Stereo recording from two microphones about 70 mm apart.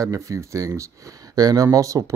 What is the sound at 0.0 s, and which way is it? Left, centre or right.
Speech, right.